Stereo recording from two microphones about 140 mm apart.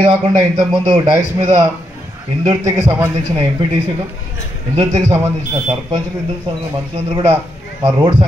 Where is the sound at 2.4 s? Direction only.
25° right (ahead or behind).